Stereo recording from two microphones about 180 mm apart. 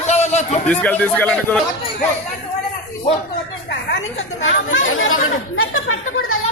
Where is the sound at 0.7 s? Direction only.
10° left (ahead or behind).